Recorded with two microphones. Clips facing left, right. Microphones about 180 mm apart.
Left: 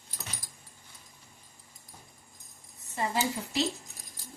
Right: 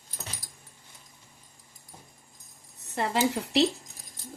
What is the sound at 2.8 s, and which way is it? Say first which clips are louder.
Speech: right 4 dB; 75° right (ahead or behind).